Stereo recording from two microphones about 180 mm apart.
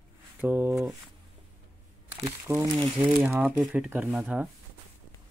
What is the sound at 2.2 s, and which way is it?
Speech, 20° right (ahead or behind).